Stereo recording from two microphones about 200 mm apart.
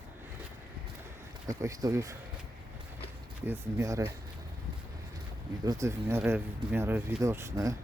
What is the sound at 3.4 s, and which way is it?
Speech, 15° right (ahead or behind).